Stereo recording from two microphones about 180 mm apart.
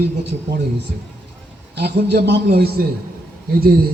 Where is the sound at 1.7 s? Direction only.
65° right (ahead or behind).